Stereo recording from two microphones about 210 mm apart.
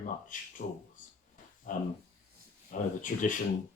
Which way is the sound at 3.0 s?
40° left (ahead or behind).